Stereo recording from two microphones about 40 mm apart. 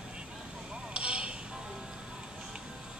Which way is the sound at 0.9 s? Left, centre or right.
Right.